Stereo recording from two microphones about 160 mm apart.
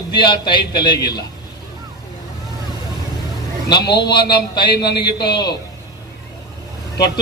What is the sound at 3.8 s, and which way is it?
Speech, 90° left.